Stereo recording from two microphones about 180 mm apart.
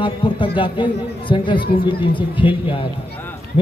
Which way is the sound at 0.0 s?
25° left (ahead or behind).